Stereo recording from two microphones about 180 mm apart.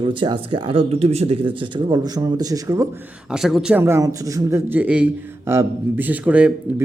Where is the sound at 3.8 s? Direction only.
15° right (ahead or behind).